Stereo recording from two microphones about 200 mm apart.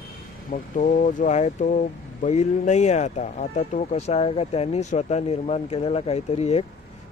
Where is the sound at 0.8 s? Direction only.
40° left (ahead or behind).